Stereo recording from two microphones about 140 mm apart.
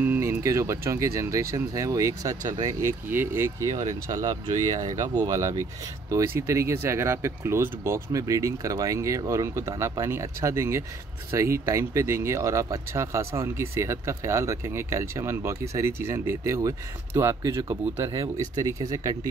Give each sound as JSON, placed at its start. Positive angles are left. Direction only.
{"t": 0.0, "sound": "speech", "side_deg": -15}